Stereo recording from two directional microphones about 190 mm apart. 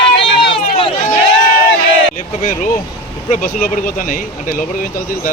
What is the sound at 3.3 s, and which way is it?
Speech, 45° left (ahead or behind).